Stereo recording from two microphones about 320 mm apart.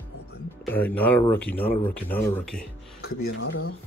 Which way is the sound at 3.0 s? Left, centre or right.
Left.